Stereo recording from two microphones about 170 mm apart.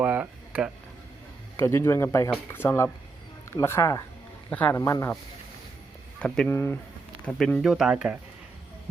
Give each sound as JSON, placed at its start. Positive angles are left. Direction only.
{"t": 0.0, "sound": "a sound", "side_deg": -10}
{"t": 1.5, "sound": "speech", "side_deg": 15}
{"t": 6.1, "sound": "speech", "side_deg": 5}
{"t": 6.5, "sound": "speech", "side_deg": 15}
{"t": 7.3, "sound": "speech", "side_deg": 5}